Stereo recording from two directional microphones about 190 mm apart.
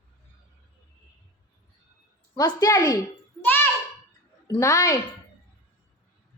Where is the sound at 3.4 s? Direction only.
10° left (ahead or behind).